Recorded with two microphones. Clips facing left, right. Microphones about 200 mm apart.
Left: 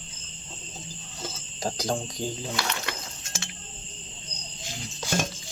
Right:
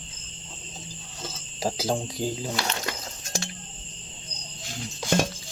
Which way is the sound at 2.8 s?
40° right (ahead or behind).